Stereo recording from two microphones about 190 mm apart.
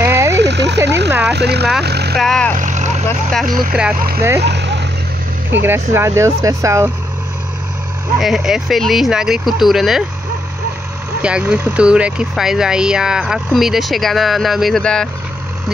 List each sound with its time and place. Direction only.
0.0 s frog: 15° right (ahead or behind)
0.4 s frog: 65° right (ahead or behind)
1.3 s speech: 60° right (ahead or behind)
2.1 s speech: 5° left (ahead or behind)
2.5 s vehicle: 40° right (ahead or behind)
3.4 s speech: 45° right (ahead or behind)
4.4 s a sound: 65° right (ahead or behind)
5.7 s speech: 15° right (ahead or behind)
8.2 s speech: centre (ahead or behind)
11.2 s speech: 5° right (ahead or behind)